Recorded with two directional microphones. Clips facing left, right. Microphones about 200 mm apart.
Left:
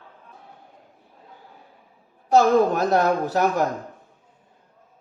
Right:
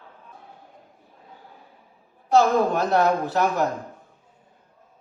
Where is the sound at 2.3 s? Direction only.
40° left (ahead or behind).